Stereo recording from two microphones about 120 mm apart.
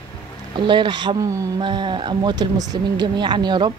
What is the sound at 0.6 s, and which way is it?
Speech, 40° right (ahead or behind).